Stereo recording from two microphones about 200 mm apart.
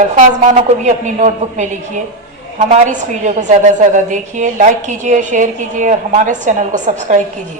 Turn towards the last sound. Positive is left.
turn(degrees=-40)  # may be behind; listen again after turning